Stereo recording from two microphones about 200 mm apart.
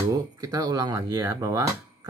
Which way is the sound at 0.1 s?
20° right (ahead or behind).